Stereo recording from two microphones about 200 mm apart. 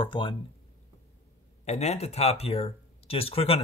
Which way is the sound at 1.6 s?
35° left (ahead or behind).